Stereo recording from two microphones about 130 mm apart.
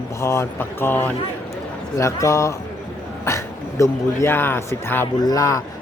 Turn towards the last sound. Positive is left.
turn(degrees=25)  # may be behind; listen again after turning